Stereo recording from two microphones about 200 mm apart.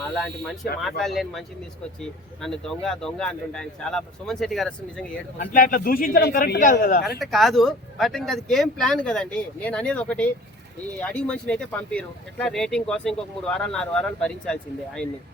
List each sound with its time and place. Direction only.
0.1 s speech: centre (ahead or behind)
5.4 s a man's voice: 45° left (ahead or behind)
7.3 s speech: centre (ahead or behind)